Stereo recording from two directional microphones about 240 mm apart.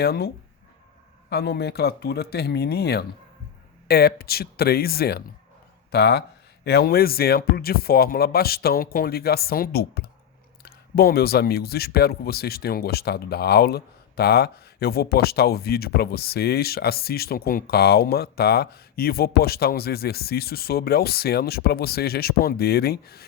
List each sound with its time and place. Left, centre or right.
0.0 s speech: left
1.3 s speech: left